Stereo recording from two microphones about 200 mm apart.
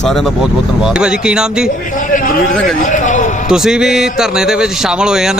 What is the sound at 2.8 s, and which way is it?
Speech, 40° left (ahead or behind).